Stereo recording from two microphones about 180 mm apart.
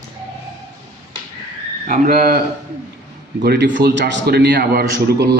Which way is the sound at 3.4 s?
65° right (ahead or behind).